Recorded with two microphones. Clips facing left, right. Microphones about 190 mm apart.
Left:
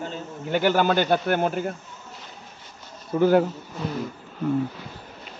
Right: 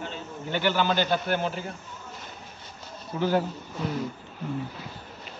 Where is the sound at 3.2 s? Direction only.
55° left (ahead or behind).